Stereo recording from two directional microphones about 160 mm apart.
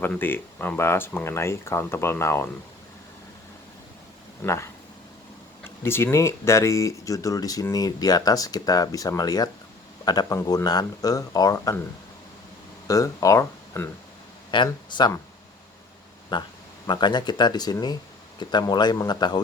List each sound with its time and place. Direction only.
0.0 s speech: 10° left (ahead or behind)
4.4 s speech: 15° left (ahead or behind)
12.9 s speech: 20° left (ahead or behind)
14.5 s speech: 30° left (ahead or behind)
16.3 s speech: 30° left (ahead or behind)